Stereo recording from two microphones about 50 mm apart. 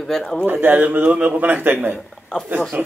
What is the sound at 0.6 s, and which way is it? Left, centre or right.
Speech, right.